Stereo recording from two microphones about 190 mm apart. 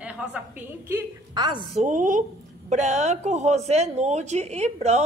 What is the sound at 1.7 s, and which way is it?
Speech, 40° right (ahead or behind).